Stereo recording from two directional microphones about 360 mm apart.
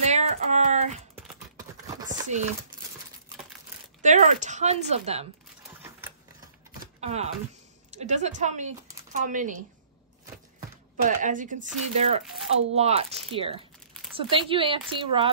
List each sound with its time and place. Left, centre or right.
0.0 s a sound: centre
1.1 s typing: centre
2.0 s chopping: right
4.0 s speech: centre
7.0 s speech: centre
11.0 s speech: right